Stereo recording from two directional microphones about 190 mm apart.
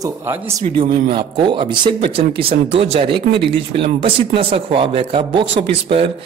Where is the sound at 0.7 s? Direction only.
25° right (ahead or behind).